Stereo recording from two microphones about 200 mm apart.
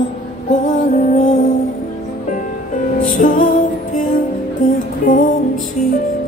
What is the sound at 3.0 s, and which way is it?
Music, 40° left (ahead or behind).